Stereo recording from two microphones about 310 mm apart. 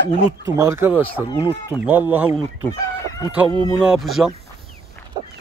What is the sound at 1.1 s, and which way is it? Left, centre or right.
Speech, centre.